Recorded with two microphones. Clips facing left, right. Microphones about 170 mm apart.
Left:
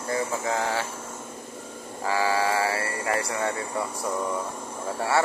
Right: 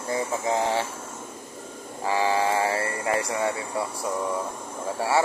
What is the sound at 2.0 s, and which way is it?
Speech, 20° right (ahead or behind).